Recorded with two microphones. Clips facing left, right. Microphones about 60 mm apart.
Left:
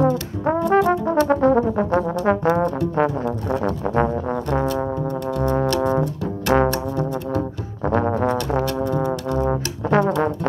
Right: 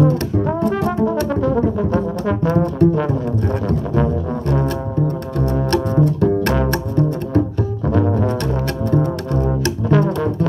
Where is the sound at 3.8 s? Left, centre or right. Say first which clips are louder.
Right 1 dB; left.